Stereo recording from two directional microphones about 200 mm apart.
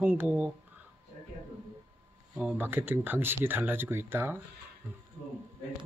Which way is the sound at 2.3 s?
5° right (ahead or behind).